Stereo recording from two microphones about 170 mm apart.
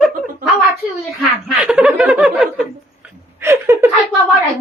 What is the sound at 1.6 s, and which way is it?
Speech, 5° right (ahead or behind).